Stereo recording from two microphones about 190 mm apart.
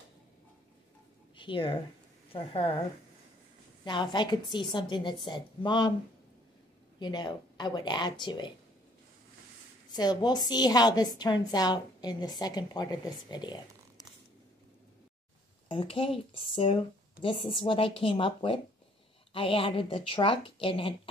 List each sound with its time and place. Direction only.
1.3 s a woman's voice: 25° left (ahead or behind)
3.8 s a woman's voice: 25° left (ahead or behind)
7.0 s a woman's voice: 25° left (ahead or behind)
9.9 s a woman's voice: 20° left (ahead or behind)
15.7 s a woman's voice: 30° left (ahead or behind)